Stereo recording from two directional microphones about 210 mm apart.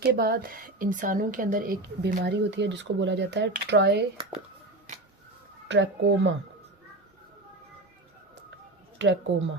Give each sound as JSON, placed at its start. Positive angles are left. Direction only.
{"t": 0.0, "sound": "speech", "side_deg": -45}
{"t": 5.6, "sound": "speech", "side_deg": -60}
{"t": 9.0, "sound": "speech", "side_deg": -60}